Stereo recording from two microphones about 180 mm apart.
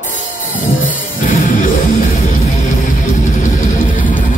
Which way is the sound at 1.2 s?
50° left (ahead or behind).